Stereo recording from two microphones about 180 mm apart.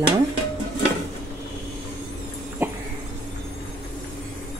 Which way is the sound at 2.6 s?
10° right (ahead or behind).